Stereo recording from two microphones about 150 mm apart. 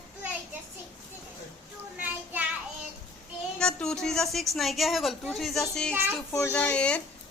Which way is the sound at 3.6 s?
5° left (ahead or behind).